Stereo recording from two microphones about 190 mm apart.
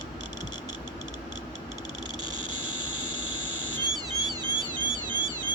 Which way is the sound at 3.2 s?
90° left.